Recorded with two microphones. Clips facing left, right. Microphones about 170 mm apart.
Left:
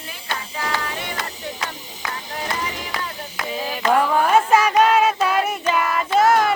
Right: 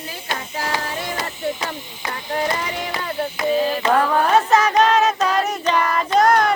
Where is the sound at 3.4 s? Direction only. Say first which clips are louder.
Right 6 dB; 5° left (ahead or behind).